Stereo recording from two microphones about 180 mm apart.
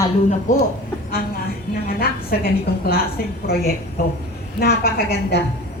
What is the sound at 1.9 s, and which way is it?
A woman's voice, 55° left (ahead or behind).